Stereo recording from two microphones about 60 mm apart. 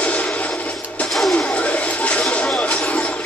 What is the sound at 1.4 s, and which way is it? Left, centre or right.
Music, left.